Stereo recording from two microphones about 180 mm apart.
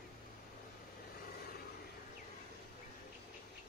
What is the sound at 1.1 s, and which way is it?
Vehicle, 60° left (ahead or behind).